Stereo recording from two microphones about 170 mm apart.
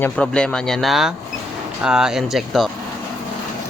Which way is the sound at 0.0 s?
5° left (ahead or behind).